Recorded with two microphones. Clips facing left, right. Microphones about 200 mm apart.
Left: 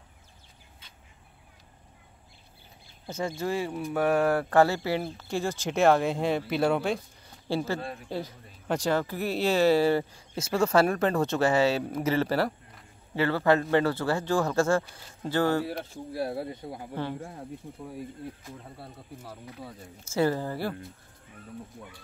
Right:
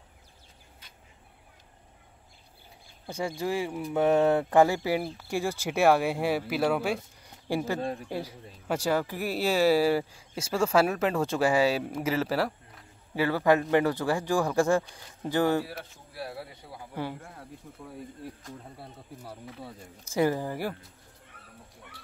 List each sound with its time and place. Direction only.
3.1 s speech: 10° right (ahead or behind)
13.1 s speech: 10° right (ahead or behind)
15.8 s speech: 45° left (ahead or behind)
17.4 s speech: 20° left (ahead or behind)
18.4 s speech: centre (ahead or behind)
20.1 s speech: 15° right (ahead or behind)